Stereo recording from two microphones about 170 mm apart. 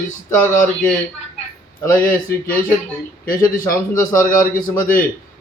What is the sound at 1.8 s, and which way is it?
Speech, 15° left (ahead or behind).